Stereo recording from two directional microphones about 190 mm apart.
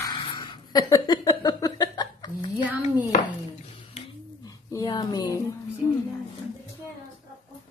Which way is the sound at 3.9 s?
25° left (ahead or behind).